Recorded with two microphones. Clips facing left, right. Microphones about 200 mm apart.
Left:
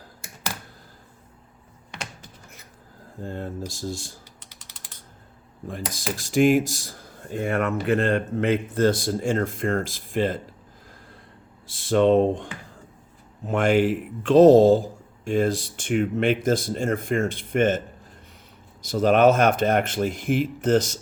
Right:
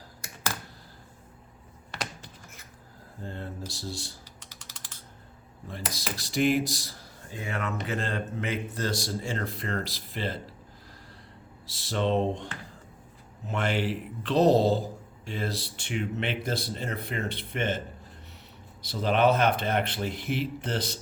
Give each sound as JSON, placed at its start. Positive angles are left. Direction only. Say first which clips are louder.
{"t": 3.2, "sound": "speech", "louder": "left 6 dB", "side_deg": 45}
{"t": 5.6, "sound": "speech", "louder": "left 6 dB", "side_deg": 50}
{"t": 11.6, "sound": "speech", "louder": "left 10 dB", "side_deg": 50}
{"t": 13.5, "sound": "speech", "louder": "left 9 dB", "side_deg": 45}
{"t": 18.8, "sound": "speech", "louder": "left 7 dB", "side_deg": 45}